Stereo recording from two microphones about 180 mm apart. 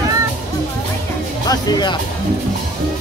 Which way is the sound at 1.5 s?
25° left (ahead or behind).